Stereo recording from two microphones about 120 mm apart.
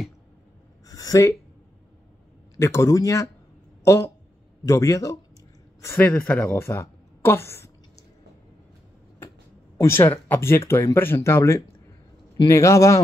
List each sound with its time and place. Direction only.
0.8 s a sound: 30° left (ahead or behind)
2.5 s a woman's voice: 25° left (ahead or behind)
9.8 s speech: 20° left (ahead or behind)